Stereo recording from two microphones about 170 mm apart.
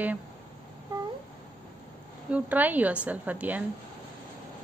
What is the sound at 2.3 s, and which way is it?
A woman's voice, 10° right (ahead or behind).